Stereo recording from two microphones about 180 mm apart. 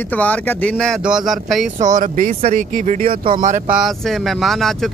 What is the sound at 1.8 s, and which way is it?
Speech, 40° right (ahead or behind).